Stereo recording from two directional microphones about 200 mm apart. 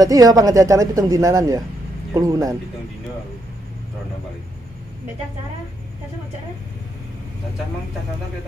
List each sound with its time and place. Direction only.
0.0 s speech: 20° right (ahead or behind)